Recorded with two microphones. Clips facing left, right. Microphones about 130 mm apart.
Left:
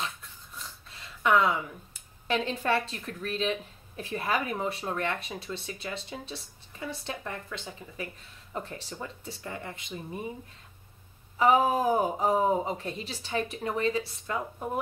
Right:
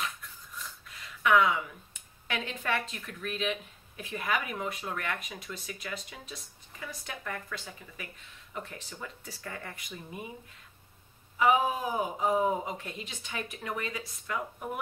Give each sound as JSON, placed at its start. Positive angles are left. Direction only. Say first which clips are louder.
{"t": 0.6, "sound": "speech", "louder": "even", "side_deg": 30}
{"t": 8.5, "sound": "speech", "louder": "left 4 dB", "side_deg": 35}
{"t": 11.3, "sound": "speech", "louder": "left 3 dB", "side_deg": 35}